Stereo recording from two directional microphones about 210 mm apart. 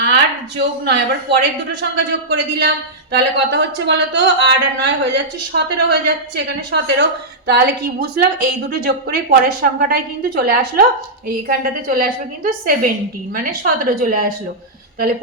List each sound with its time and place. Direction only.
0.0 s a woman's voice: 55° right (ahead or behind)
8.2 s a woman's voice: 45° right (ahead or behind)